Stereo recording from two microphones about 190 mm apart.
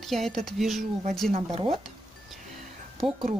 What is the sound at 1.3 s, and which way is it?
Speech, 30° right (ahead or behind).